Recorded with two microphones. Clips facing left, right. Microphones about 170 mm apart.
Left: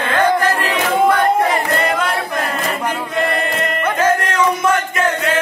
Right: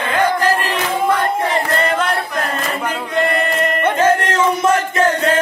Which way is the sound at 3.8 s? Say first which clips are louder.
Right 1 dB; 30° right (ahead or behind).